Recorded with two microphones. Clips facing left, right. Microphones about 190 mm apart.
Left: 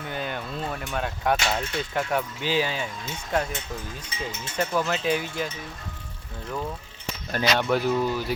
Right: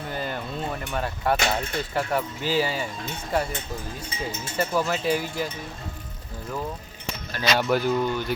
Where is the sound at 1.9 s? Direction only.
5° right (ahead or behind).